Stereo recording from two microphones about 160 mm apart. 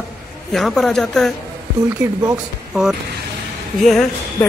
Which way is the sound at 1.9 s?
15° right (ahead or behind).